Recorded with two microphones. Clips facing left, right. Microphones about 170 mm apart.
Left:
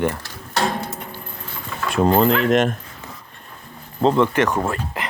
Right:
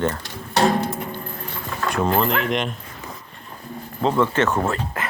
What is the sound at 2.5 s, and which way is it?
Speech, 45° left (ahead or behind).